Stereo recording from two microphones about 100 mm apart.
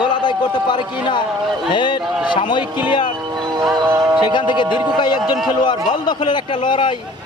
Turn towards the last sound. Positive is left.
turn(degrees=55)  # may be behind; listen again after turning